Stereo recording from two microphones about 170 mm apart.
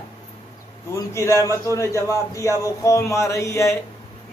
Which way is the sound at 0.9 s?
15° left (ahead or behind).